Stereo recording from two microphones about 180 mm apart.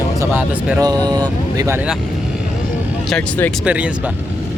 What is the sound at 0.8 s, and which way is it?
Speech, 25° right (ahead or behind).